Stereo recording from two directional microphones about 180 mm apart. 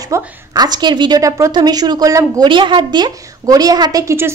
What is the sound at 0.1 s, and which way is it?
A woman's voice, 20° right (ahead or behind).